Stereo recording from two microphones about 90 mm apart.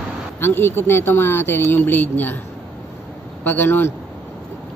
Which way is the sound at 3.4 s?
20° left (ahead or behind).